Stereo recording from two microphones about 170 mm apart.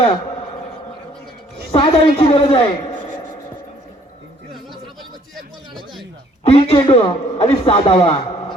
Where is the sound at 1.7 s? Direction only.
30° left (ahead or behind).